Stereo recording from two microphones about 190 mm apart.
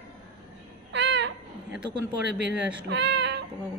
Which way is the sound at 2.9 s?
65° right (ahead or behind).